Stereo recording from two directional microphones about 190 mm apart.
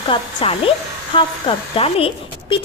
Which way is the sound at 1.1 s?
25° left (ahead or behind).